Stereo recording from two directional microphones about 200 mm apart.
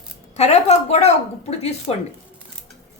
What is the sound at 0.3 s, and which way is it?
A woman's voice, 35° left (ahead or behind).